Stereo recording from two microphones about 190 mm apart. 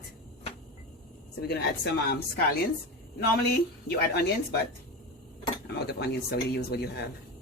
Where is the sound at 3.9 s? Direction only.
55° left (ahead or behind).